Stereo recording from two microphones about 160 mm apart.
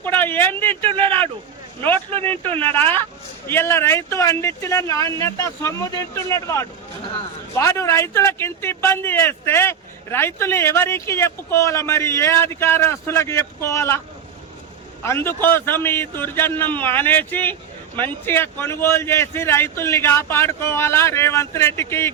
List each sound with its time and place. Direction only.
0.0 s a sound: 10° left (ahead or behind)
2.6 s a man's voice: 10° left (ahead or behind)
15.0 s a man's voice: 15° left (ahead or behind)